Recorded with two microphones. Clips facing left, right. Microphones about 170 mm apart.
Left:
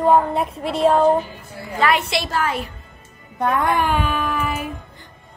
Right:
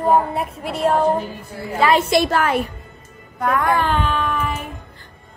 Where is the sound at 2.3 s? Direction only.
60° right (ahead or behind).